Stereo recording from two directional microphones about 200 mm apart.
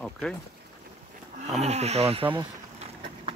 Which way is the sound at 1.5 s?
30° right (ahead or behind).